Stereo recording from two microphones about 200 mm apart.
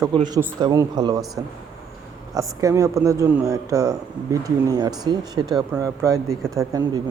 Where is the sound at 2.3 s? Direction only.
15° right (ahead or behind).